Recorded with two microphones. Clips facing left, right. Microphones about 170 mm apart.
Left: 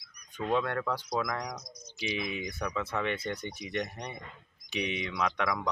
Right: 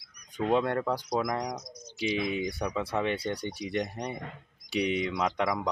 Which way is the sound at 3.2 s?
35° right (ahead or behind).